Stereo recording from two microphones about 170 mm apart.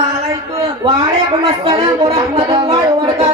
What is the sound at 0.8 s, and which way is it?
Speech, 30° right (ahead or behind).